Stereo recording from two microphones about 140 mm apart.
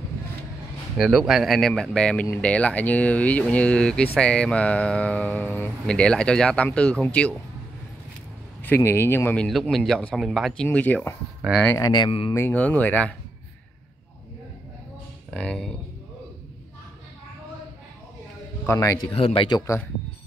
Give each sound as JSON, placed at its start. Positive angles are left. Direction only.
{"t": 0.9, "sound": "speech", "side_deg": 0}
{"t": 8.6, "sound": "speech", "side_deg": 15}
{"t": 9.4, "sound": "speech", "side_deg": 0}
{"t": 11.8, "sound": "speech", "side_deg": 30}
{"t": 12.4, "sound": "speech", "side_deg": 10}
{"t": 15.3, "sound": "speech", "side_deg": 5}
{"t": 18.7, "sound": "speech", "side_deg": 25}
{"t": 19.1, "sound": "speech", "side_deg": 40}
{"t": 19.5, "sound": "speech", "side_deg": 20}